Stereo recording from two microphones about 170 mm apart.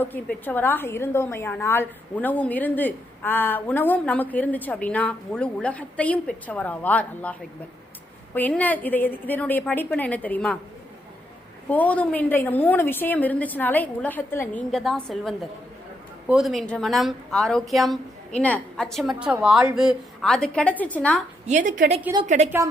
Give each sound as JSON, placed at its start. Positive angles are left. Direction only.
{"t": 0.0, "sound": "a woman's voice", "side_deg": 10}
{"t": 11.7, "sound": "a woman's voice", "side_deg": 10}
{"t": 14.7, "sound": "speech", "side_deg": 0}
{"t": 21.4, "sound": "a woman's voice", "side_deg": -45}